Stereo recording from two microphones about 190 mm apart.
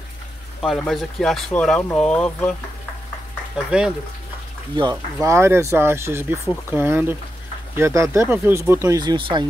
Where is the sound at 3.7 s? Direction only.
5° right (ahead or behind).